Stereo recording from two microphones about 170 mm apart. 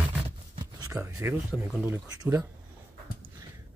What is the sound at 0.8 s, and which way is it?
Speech, 15° right (ahead or behind).